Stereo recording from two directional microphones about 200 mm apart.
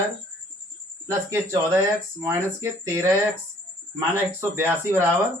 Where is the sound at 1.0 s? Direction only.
15° right (ahead or behind).